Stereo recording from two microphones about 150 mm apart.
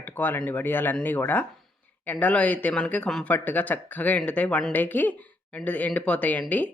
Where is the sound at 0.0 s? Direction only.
15° left (ahead or behind).